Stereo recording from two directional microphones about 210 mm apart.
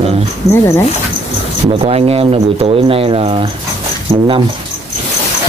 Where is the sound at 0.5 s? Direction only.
10° left (ahead or behind).